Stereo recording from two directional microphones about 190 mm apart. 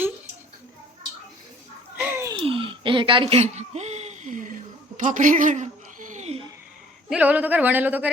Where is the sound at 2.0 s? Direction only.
10° right (ahead or behind).